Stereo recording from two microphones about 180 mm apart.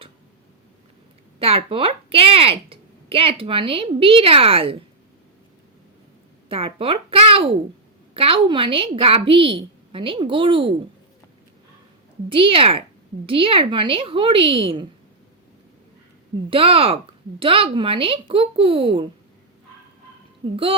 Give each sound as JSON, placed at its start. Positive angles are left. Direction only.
{"t": 1.4, "sound": "a woman's voice", "side_deg": -30}
{"t": 6.5, "sound": "a woman's voice", "side_deg": -30}
{"t": 12.3, "sound": "a woman's voice", "side_deg": -30}
{"t": 16.5, "sound": "a woman's voice", "side_deg": -30}
{"t": 20.4, "sound": "a woman's voice", "side_deg": -30}